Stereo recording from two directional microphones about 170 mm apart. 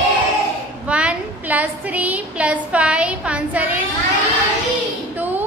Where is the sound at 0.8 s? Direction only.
5° right (ahead or behind).